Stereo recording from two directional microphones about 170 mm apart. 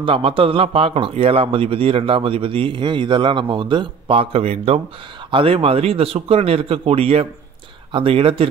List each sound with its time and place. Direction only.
0.0 s a man's voice: 30° right (ahead or behind)